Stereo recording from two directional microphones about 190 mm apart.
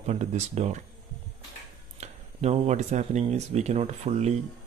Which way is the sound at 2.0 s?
35° right (ahead or behind).